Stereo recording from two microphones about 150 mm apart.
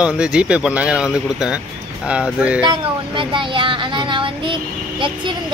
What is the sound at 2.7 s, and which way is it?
Speech, 35° right (ahead or behind).